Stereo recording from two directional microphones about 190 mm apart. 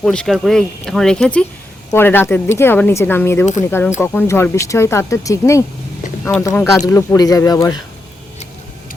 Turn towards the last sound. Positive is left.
turn(degrees=20)  # may be behind; listen again after turning